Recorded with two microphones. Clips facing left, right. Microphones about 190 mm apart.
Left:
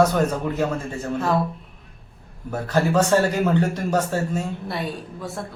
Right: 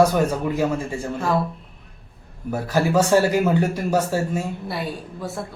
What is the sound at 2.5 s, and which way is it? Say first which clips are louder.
A man's voice: right 1 dB; 10° right (ahead or behind).